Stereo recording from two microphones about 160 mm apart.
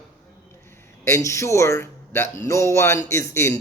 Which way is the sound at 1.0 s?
20° left (ahead or behind).